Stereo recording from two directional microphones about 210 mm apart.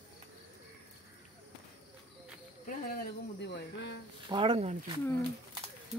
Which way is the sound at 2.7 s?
45° left (ahead or behind).